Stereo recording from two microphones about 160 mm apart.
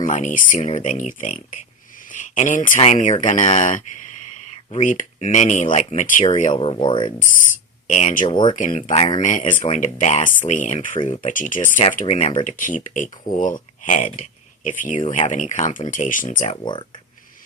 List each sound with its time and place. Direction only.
0.0 s speech: 50° left (ahead or behind); by 7.1 s 30° left (ahead or behind)
7.9 s speech: 50° left (ahead or behind)
8.3 s speech: 30° left (ahead or behind)
8.5 s speech: 50° left (ahead or behind)
11.9 s speech: 45° left (ahead or behind)
12.5 s speech: 55° left (ahead or behind)
16.5 s speech: 30° left (ahead or behind)